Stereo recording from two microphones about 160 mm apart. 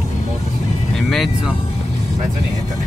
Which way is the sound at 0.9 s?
Centre (ahead or behind).